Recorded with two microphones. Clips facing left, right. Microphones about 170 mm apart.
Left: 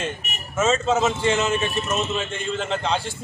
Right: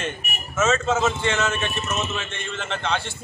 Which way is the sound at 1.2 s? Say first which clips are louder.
Left 3 dB; 35° left (ahead or behind).